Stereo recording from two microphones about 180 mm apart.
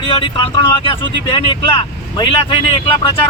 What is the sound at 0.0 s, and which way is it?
Speech, 30° left (ahead or behind).